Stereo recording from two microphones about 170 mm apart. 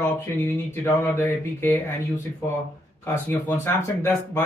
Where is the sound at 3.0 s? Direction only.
15° left (ahead or behind).